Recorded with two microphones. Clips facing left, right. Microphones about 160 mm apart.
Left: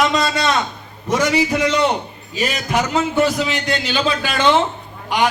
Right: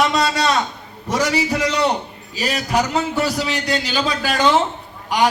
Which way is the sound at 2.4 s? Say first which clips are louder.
Right 1 dB; 35° right (ahead or behind).